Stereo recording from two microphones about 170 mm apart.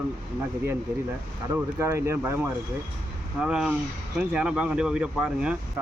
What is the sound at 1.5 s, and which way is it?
Speech, 15° right (ahead or behind).